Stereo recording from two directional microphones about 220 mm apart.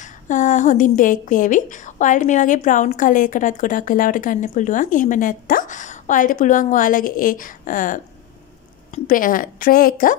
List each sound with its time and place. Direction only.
0.0 s speech: 35° left (ahead or behind)